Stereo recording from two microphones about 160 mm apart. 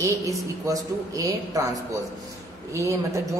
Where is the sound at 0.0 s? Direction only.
20° right (ahead or behind).